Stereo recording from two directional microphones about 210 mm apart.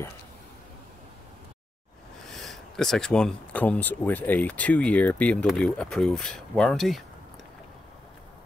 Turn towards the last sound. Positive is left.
turn(degrees=0)  # may be behind; listen again after turning